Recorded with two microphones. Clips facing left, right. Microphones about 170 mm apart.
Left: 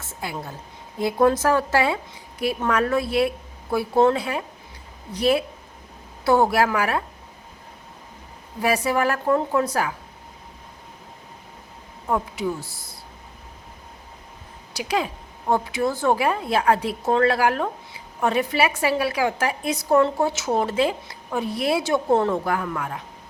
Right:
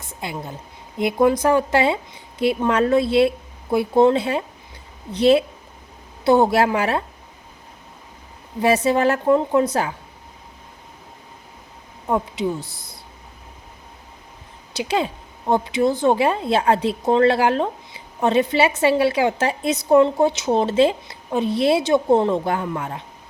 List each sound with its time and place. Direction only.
0.0 s a woman's voice: 20° right (ahead or behind)
8.6 s a woman's voice: 25° right (ahead or behind)
12.0 s speech: 20° right (ahead or behind)
14.8 s a woman's voice: 25° right (ahead or behind)